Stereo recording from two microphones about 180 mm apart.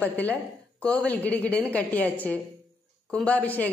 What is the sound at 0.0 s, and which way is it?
A woman's voice, 10° left (ahead or behind).